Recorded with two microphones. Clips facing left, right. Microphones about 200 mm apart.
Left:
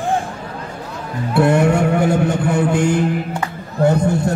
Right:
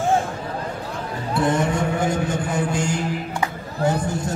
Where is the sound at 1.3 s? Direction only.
65° left (ahead or behind).